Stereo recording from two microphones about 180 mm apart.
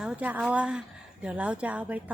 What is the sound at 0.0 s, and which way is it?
A woman's voice, 10° right (ahead or behind).